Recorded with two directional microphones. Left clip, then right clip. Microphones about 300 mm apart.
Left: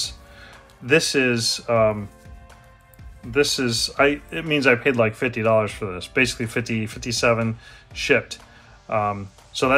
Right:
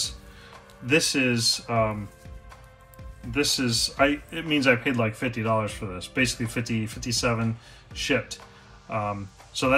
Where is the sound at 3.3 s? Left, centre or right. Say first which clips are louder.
Left 4 dB; centre.